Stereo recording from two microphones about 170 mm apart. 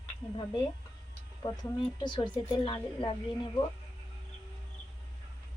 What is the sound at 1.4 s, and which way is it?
Speech, 25° left (ahead or behind).